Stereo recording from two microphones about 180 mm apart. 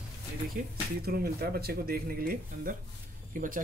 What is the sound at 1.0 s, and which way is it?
Speech, 55° right (ahead or behind).